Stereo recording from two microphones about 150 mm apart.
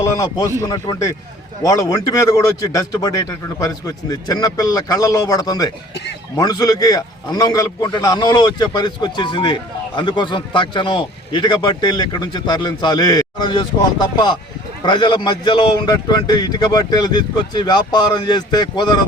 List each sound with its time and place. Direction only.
0.2 s a man's voice: 20° left (ahead or behind)